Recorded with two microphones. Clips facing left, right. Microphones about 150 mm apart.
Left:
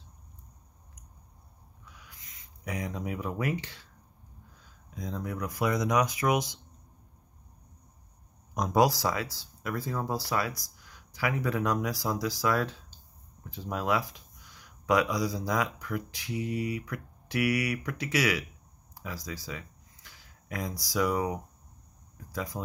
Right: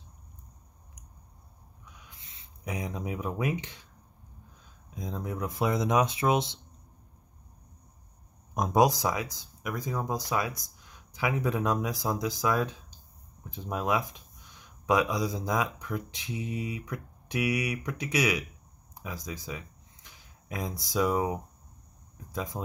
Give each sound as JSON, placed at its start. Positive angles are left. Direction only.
{"t": 1.9, "sound": "a sound", "side_deg": -20}
{"t": 4.6, "sound": "speech", "side_deg": -20}
{"t": 8.5, "sound": "speech", "side_deg": -20}